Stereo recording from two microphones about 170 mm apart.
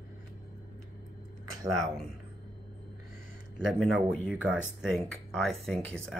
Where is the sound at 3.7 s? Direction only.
Centre (ahead or behind).